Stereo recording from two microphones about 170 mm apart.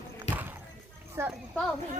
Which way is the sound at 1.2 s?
15° right (ahead or behind).